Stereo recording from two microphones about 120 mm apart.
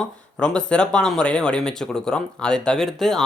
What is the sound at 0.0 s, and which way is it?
Speech, 10° left (ahead or behind).